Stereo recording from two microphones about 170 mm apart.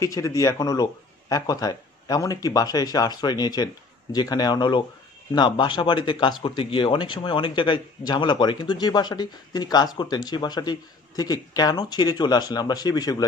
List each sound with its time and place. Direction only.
0.0 s speech: 20° left (ahead or behind)